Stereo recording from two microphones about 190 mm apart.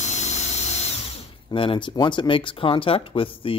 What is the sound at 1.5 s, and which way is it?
Speech, 30° left (ahead or behind).